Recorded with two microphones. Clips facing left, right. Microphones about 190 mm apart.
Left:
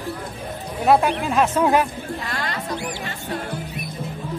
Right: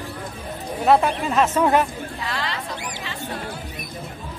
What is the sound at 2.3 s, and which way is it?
Bird, 45° left (ahead or behind).